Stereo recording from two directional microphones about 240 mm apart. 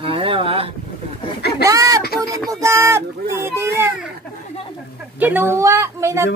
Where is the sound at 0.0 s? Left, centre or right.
Right.